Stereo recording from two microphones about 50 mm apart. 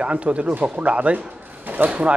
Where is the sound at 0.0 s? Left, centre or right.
Right.